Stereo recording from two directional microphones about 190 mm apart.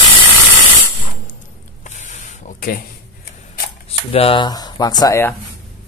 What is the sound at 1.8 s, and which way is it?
Spray, 40° left (ahead or behind).